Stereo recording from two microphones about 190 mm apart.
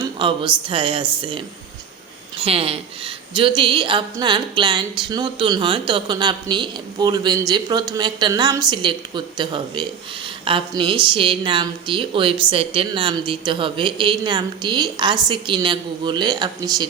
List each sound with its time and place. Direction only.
0.2 s a woman's voice: 25° right (ahead or behind)
2.4 s a woman's voice: 30° right (ahead or behind)